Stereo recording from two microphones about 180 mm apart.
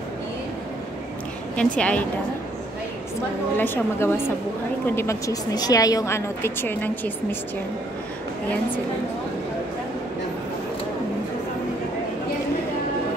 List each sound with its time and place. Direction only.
1.6 s a woman's voice: 5° left (ahead or behind)
3.5 s a woman's voice: 10° left (ahead or behind)